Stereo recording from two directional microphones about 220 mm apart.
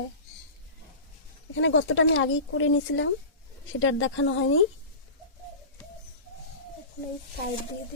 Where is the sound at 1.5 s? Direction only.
65° left (ahead or behind).